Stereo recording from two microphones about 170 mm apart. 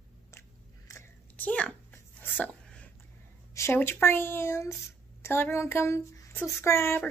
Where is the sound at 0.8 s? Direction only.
15° left (ahead or behind).